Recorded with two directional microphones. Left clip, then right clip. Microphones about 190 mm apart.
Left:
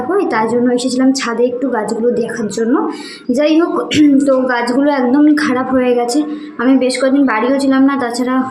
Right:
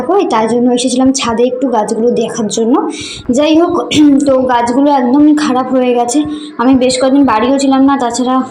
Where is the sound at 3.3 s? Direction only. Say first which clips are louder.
Right 3 dB; 15° right (ahead or behind).